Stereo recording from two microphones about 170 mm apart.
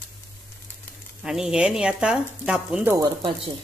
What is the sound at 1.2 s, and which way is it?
Speech, 5° right (ahead or behind).